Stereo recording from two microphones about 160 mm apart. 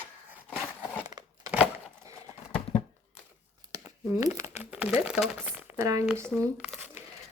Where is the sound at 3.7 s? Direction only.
20° right (ahead or behind).